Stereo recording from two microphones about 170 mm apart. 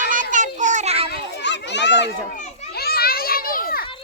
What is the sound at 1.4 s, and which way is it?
Children playing, 90° left.